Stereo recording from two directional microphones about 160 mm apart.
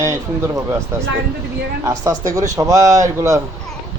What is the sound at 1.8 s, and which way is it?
Speech, 20° right (ahead or behind).